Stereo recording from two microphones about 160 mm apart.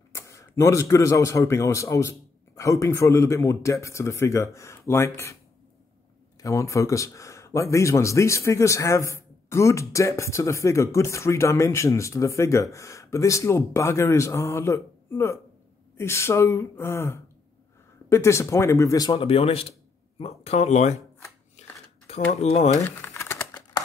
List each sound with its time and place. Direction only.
0.1 s speech: 20° left (ahead or behind)
6.4 s speech: 20° left (ahead or behind)
19.1 s speech: 35° left (ahead or behind)
21.6 s shuffling cards: 45° left (ahead or behind)
22.3 s speech: 45° left (ahead or behind)
22.8 s crumpling: 15° left (ahead or behind)